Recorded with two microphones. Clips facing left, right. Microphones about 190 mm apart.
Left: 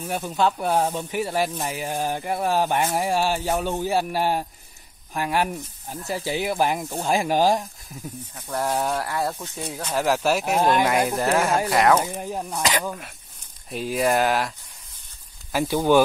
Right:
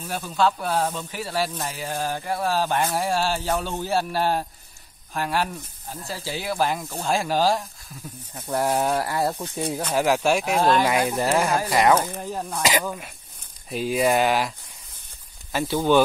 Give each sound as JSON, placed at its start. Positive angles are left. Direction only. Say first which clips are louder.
{"t": 0.1, "sound": "speech", "louder": "even", "side_deg": 20}
{"t": 8.4, "sound": "speech", "louder": "right 2 dB", "side_deg": -10}
{"t": 9.4, "sound": "speech", "louder": "right 5 dB", "side_deg": -35}
{"t": 9.9, "sound": "speech", "louder": "right 1 dB", "side_deg": 0}
{"t": 11.1, "sound": "speech", "louder": "even", "side_deg": 0}
{"t": 12.0, "sound": "speech", "louder": "left 1 dB", "side_deg": 15}
{"t": 13.7, "sound": "speech", "louder": "right 1 dB", "side_deg": 0}
{"t": 15.5, "sound": "speech", "louder": "left 1 dB", "side_deg": 10}